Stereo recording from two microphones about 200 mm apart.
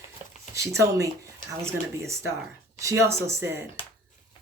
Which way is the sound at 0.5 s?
15° right (ahead or behind).